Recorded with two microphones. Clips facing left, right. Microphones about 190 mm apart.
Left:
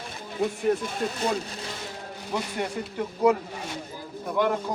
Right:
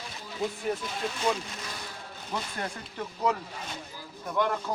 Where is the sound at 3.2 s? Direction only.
10° left (ahead or behind).